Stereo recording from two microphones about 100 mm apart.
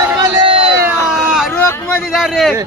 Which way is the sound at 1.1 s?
5° right (ahead or behind).